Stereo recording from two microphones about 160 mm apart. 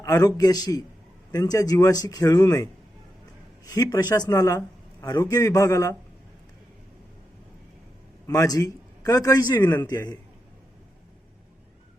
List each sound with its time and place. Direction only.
0.0 s speech: 20° left (ahead or behind)
3.7 s speech: 25° left (ahead or behind)
8.3 s a man's voice: 20° left (ahead or behind)
9.6 s a man's voice: 10° left (ahead or behind)
9.8 s speech: 25° left (ahead or behind)